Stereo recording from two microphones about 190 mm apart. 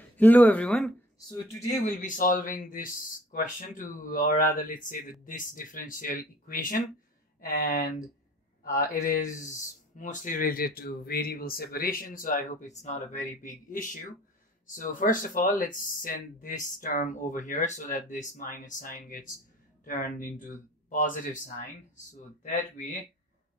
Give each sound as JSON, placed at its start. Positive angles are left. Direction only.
{"t": 0.2, "sound": "speech", "side_deg": 10}
{"t": 1.8, "sound": "speech", "side_deg": 40}